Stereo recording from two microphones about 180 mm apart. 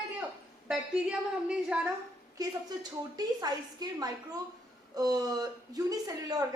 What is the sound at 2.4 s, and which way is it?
A woman's voice, 20° right (ahead or behind).